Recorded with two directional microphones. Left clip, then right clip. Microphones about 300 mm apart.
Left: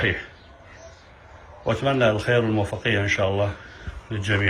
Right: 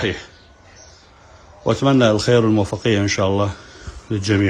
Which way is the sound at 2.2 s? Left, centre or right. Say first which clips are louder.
Right 6 dB; right.